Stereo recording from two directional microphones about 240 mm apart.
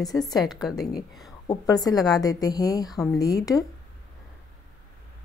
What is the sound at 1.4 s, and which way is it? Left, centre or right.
Speech, centre.